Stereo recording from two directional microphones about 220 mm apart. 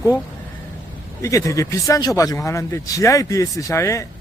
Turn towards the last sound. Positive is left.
turn(degrees=15)  # may be behind; listen again after turning